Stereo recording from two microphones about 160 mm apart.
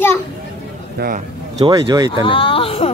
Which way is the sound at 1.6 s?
25° right (ahead or behind).